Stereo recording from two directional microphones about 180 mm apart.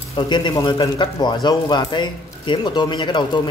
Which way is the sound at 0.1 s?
25° left (ahead or behind).